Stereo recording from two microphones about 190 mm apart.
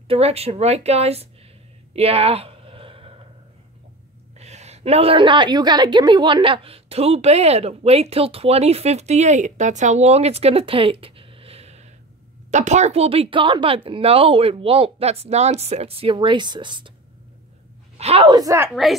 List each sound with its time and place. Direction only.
0.1 s a woman's voice: 30° right (ahead or behind)
2.0 s a sound: 30° right (ahead or behind)
4.4 s a woman's voice: 35° right (ahead or behind)
17.9 s speech: 30° right (ahead or behind)